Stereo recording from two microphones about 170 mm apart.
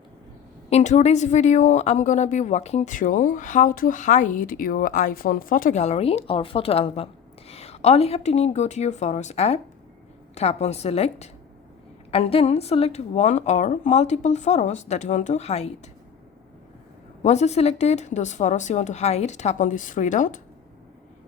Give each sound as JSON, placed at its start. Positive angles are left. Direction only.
{"t": 0.7, "sound": "speech", "side_deg": 40}
{"t": 17.2, "sound": "speech", "side_deg": 40}